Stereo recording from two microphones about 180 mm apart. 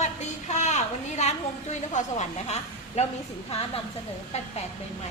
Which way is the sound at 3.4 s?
35° left (ahead or behind).